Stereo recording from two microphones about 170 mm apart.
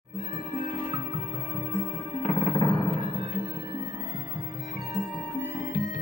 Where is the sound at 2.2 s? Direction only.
40° left (ahead or behind).